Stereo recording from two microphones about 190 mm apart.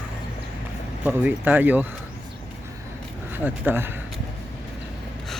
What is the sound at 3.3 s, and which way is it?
Speech, 10° right (ahead or behind).